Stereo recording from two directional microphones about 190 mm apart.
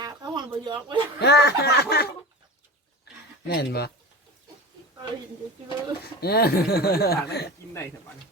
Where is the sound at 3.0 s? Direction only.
55° left (ahead or behind).